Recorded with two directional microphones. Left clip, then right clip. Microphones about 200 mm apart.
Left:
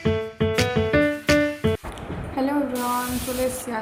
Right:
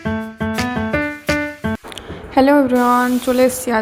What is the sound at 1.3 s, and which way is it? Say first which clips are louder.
Music: right 1 dB; centre (ahead or behind).